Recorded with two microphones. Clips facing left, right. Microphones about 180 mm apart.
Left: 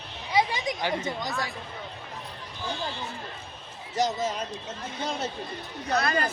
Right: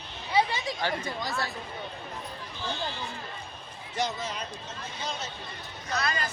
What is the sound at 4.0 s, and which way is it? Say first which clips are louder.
Speech: left 5 dB; 40° left (ahead or behind).